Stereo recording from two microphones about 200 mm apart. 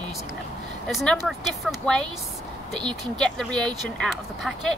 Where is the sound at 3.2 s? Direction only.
5° left (ahead or behind).